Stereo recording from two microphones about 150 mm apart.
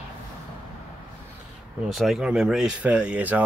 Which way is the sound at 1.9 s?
Centre (ahead or behind).